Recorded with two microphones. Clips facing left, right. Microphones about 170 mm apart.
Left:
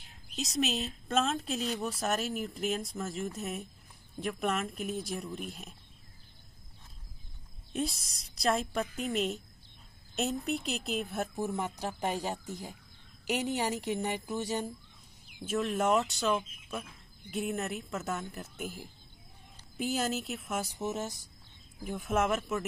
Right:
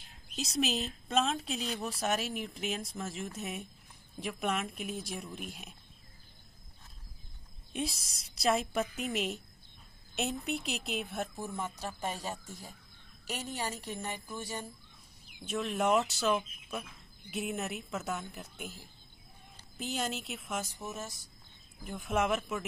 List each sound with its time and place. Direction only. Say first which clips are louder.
0.4 s speech: left 1 dB; centre (ahead or behind)
7.7 s speech: left 3 dB; centre (ahead or behind)
11.3 s speech: left 5 dB; 15° left (ahead or behind)
13.9 s speech: left 6 dB; 15° left (ahead or behind)
15.4 s speech: left 2 dB; centre (ahead or behind)
19.8 s speech: left 4 dB; 5° left (ahead or behind)
21.8 s speech: left 2 dB; centre (ahead or behind)